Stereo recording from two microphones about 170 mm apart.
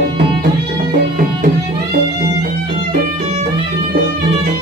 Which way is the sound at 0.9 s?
55° right (ahead or behind).